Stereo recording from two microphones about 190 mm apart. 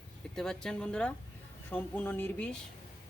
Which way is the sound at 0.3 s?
5° left (ahead or behind).